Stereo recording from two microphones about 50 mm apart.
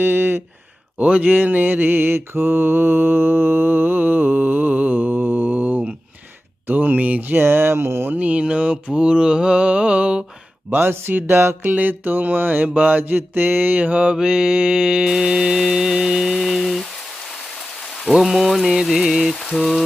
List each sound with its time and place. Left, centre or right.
0.0 s a sound: right
0.9 s mantra: right
6.7 s a sound: right
8.1 s mantra: right
10.7 s mantra: right
12.6 s mantra: right
14.2 s mantra: centre
17.2 s rain: centre
19.3 s mantra: centre